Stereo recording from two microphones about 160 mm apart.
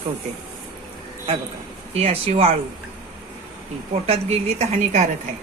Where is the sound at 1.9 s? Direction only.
40° right (ahead or behind).